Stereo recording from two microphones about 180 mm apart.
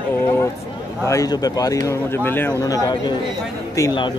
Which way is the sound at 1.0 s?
20° left (ahead or behind).